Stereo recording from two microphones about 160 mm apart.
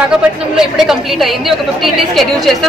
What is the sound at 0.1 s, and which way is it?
A woman's voice, 5° right (ahead or behind).